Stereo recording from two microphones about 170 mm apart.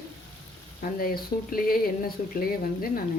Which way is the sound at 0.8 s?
60° left (ahead or behind).